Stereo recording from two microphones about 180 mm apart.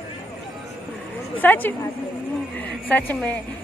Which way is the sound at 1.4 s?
10° left (ahead or behind).